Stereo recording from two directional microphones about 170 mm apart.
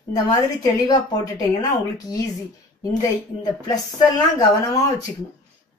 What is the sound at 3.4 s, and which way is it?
Speech, 20° left (ahead or behind).